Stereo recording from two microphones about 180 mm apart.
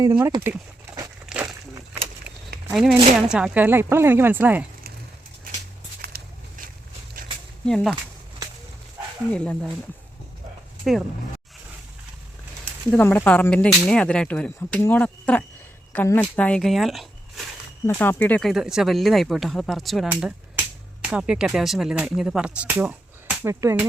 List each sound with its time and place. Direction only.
0.0 s speech: 25° right (ahead or behind)
1.3 s a sound: 5° right (ahead or behind)
2.7 s speech: centre (ahead or behind)
6.0 s a sound: 60° right (ahead or behind)
7.6 s speech: 5° left (ahead or behind)
9.3 s speech: 5° left (ahead or behind)
12.9 s speech: 10° left (ahead or behind)
17.8 s speech: 10° left (ahead or behind); by 23.8 s 15° right (ahead or behind)